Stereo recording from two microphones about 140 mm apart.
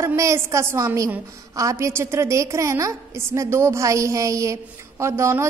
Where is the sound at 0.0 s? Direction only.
20° right (ahead or behind).